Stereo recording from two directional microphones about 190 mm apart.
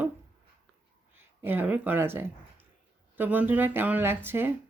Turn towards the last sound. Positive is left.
turn(degrees=-10)  # may be behind; listen again after turning